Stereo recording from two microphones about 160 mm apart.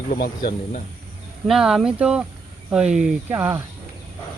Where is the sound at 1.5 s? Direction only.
Centre (ahead or behind).